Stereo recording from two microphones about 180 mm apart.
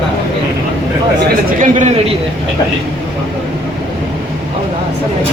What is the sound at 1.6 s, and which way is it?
Speech, 45° right (ahead or behind).